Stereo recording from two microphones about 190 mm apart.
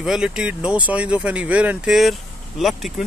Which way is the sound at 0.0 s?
5° right (ahead or behind).